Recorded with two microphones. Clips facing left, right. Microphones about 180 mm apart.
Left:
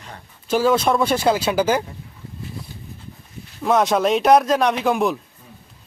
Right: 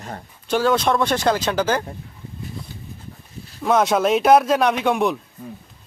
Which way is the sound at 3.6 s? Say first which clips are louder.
Even; centre (ahead or behind).